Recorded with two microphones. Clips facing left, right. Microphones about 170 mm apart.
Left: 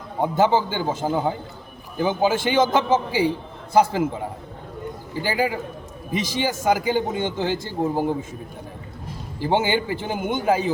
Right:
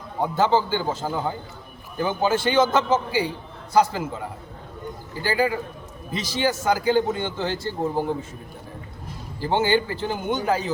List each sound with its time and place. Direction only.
0.2 s a man's voice: 15° left (ahead or behind)
5.2 s a man's voice: 15° left (ahead or behind)
9.4 s a man's voice: 15° left (ahead or behind)